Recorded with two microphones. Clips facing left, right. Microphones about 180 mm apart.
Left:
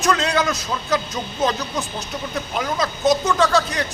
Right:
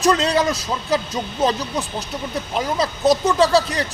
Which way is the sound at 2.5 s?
30° right (ahead or behind).